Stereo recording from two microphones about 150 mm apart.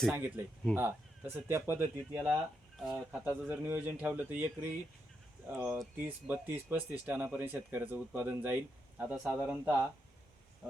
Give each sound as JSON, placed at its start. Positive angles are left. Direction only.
{"t": 0.1, "sound": "speech", "side_deg": -15}